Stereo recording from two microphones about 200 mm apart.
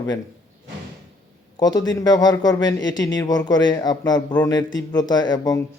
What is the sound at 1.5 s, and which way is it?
A man's voice, 20° left (ahead or behind).